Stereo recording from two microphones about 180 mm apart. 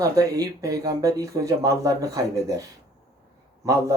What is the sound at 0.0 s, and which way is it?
Speech, 20° right (ahead or behind).